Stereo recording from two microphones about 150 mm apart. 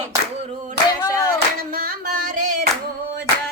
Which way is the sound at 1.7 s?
70° right (ahead or behind).